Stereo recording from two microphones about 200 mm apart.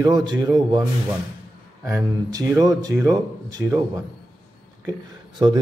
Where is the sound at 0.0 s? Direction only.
20° right (ahead or behind).